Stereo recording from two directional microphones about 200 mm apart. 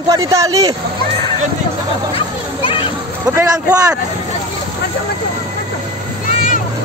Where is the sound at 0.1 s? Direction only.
15° right (ahead or behind).